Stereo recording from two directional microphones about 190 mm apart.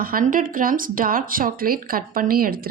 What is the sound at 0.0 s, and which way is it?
A woman's voice, 50° right (ahead or behind).